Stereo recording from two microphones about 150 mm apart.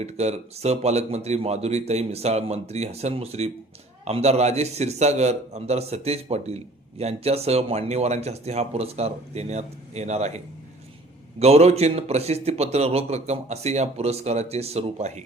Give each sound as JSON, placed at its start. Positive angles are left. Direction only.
{"t": 0.0, "sound": "a man's voice", "side_deg": -45}